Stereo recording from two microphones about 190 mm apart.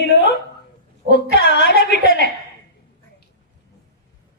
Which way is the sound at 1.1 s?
60° left (ahead or behind).